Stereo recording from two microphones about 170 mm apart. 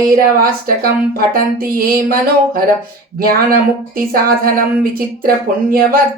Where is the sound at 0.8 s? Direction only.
60° right (ahead or behind).